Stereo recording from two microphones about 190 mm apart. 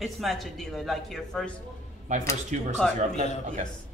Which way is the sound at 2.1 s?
40° right (ahead or behind).